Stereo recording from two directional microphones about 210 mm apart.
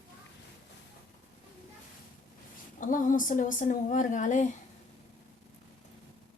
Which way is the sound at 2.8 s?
40° left (ahead or behind).